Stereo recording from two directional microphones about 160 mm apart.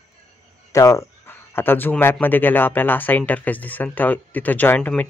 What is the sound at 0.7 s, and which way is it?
Speech, 20° left (ahead or behind).